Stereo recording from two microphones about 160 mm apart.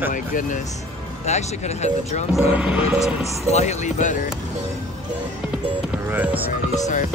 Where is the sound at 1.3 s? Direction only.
45° left (ahead or behind).